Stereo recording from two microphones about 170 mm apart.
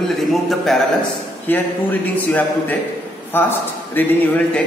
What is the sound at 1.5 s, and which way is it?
Speech, 10° left (ahead or behind).